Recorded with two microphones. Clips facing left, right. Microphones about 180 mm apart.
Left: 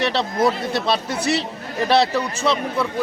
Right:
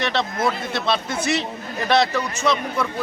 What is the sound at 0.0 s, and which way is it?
A man's voice, 35° left (ahead or behind).